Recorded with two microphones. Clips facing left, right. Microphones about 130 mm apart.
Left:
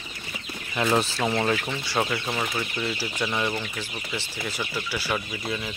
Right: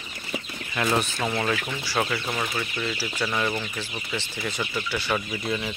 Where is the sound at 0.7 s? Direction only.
15° left (ahead or behind).